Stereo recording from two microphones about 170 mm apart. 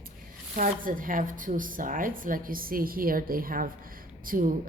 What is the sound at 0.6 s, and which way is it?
A woman's voice, 55° right (ahead or behind).